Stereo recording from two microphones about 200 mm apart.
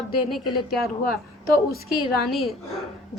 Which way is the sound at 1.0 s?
50° left (ahead or behind).